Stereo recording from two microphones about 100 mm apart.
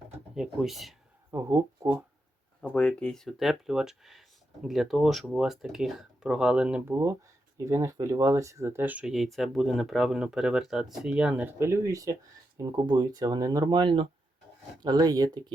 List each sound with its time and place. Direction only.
0.3 s speech: 5° right (ahead or behind)
1.3 s speech: 35° right (ahead or behind)
2.7 s speech: 10° left (ahead or behind); by 6.8 s 10° right (ahead or behind)
6.8 s speech: 25° right (ahead or behind)
9.0 s speech: 5° right (ahead or behind); by 12.1 s 35° right (ahead or behind)
12.6 s speech: 45° right (ahead or behind)
14.8 s speech: 45° right (ahead or behind)